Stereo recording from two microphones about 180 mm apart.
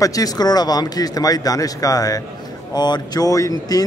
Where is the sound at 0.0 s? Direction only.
20° left (ahead or behind).